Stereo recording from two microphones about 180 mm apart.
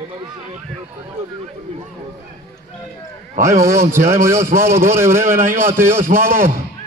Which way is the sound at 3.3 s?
15° right (ahead or behind).